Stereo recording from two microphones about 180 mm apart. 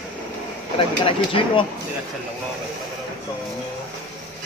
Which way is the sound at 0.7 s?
30° left (ahead or behind).